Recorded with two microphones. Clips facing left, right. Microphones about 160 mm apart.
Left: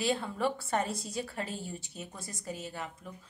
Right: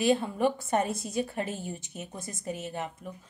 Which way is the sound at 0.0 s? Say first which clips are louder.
Right 6 dB; 20° right (ahead or behind).